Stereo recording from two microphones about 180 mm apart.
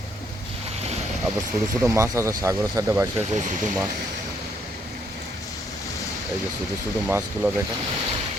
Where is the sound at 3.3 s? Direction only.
45° right (ahead or behind).